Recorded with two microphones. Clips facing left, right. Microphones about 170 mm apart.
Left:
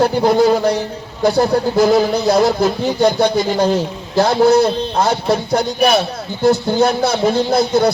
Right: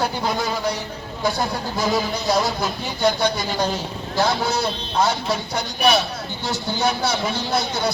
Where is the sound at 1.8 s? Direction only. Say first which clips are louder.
Left 5 dB; 60° left (ahead or behind).